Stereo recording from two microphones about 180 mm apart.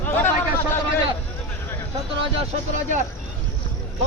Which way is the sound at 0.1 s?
10° left (ahead or behind).